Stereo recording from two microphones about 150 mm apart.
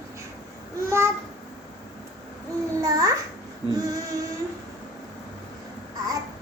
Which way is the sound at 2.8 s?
20° right (ahead or behind).